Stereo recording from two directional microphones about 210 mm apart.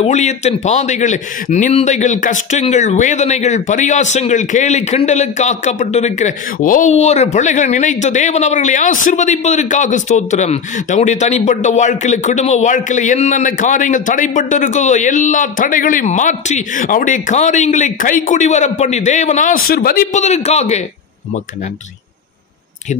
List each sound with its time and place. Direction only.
0.0 s a man's voice: 35° left (ahead or behind)